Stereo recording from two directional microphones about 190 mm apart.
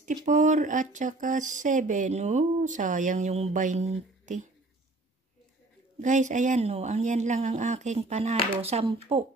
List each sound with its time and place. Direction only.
0.0 s speech: 40° right (ahead or behind)
5.9 s speech: 40° right (ahead or behind)